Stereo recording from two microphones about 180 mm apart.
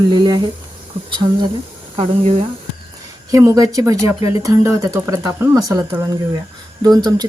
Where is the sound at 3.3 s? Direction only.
20° right (ahead or behind).